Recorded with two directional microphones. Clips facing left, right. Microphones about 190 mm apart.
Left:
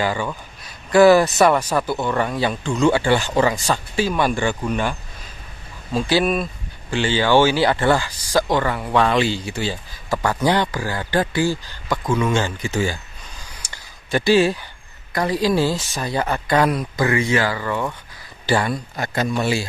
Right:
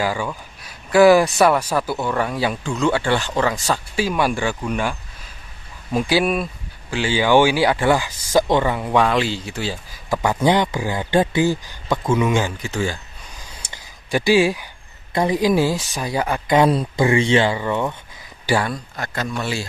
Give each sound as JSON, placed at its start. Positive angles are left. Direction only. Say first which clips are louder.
{"t": 0.0, "sound": "a man's voice", "louder": "even", "side_deg": -5}
{"t": 5.9, "sound": "speech", "louder": "even", "side_deg": -10}
{"t": 9.0, "sound": "a man's voice", "louder": "left 1 dB", "side_deg": 0}
{"t": 10.2, "sound": "speech", "louder": "right 2 dB", "side_deg": -20}
{"t": 12.6, "sound": "a man's voice", "louder": "left 1 dB", "side_deg": 5}
{"t": 13.6, "sound": "a sound", "louder": "right 1 dB", "side_deg": -25}
{"t": 14.1, "sound": "speech", "louder": "even", "side_deg": -10}
{"t": 16.5, "sound": "speech", "louder": "right 3 dB", "side_deg": -25}